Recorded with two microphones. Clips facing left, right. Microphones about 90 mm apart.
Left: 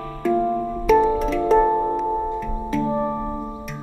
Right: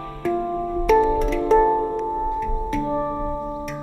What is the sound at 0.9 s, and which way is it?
Music, centre (ahead or behind).